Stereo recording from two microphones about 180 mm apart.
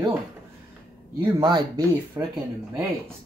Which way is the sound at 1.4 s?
25° right (ahead or behind).